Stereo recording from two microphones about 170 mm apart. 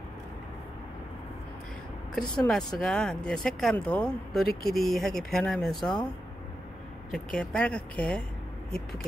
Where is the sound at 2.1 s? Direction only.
5° left (ahead or behind).